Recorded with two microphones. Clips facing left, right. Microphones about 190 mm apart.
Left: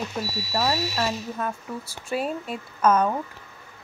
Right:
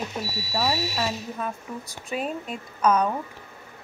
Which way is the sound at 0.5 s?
5° right (ahead or behind).